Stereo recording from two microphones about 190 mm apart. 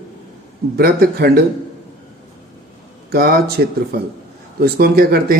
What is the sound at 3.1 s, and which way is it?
Speech, 50° right (ahead or behind).